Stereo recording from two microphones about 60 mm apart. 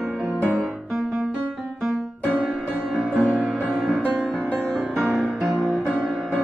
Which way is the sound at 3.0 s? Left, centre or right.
Right.